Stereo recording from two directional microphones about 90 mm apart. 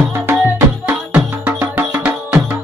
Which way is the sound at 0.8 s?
20° right (ahead or behind).